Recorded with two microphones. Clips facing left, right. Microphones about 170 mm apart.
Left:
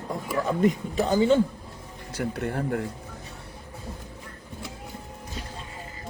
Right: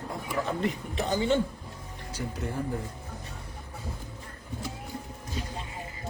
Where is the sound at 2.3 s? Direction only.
70° left (ahead or behind).